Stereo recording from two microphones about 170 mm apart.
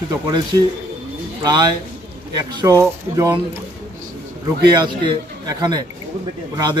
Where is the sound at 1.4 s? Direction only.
25° right (ahead or behind).